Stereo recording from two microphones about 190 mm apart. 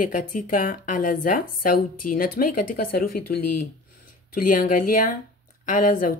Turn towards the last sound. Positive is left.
turn(degrees=45)  # may be behind; listen again after turning